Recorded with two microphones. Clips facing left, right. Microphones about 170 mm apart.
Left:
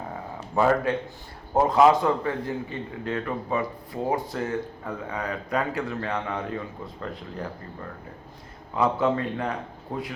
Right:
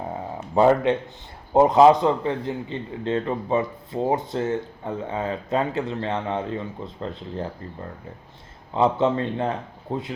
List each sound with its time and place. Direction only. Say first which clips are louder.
0.5 s a man's voice: right 4 dB; 20° right (ahead or behind)
8.7 s a man's voice: right 3 dB; 25° right (ahead or behind)